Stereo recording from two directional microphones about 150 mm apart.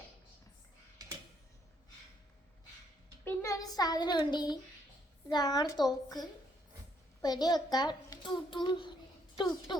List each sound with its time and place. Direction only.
3.2 s a child's voice: 20° left (ahead or behind)
7.2 s a child's voice: 25° left (ahead or behind)